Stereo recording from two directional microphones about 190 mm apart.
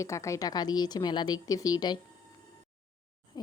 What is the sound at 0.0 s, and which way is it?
A woman's voice, 15° left (ahead or behind).